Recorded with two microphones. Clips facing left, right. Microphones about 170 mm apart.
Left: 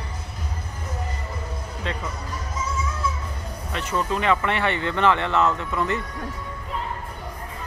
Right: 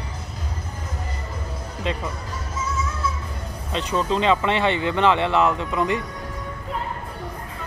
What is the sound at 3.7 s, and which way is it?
Speech, 20° right (ahead or behind).